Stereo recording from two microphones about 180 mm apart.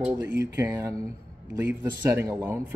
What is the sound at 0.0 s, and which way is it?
A man's voice, 10° right (ahead or behind).